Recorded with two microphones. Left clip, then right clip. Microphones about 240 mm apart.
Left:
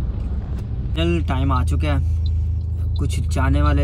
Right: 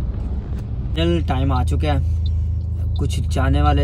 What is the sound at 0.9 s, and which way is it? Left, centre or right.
Speech, centre.